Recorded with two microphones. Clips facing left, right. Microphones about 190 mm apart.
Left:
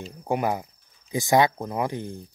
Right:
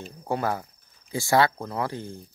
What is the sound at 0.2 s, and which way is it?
A man's voice, 15° left (ahead or behind).